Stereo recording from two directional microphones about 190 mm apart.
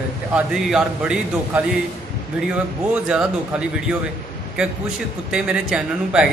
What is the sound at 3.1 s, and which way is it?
Speech, 5° right (ahead or behind).